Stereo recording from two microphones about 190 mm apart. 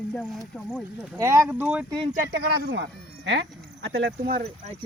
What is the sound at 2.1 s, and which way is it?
Speech, 50° right (ahead or behind).